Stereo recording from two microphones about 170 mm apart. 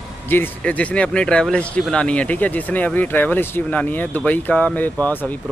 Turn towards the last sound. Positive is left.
turn(degrees=10)  # may be behind; listen again after turning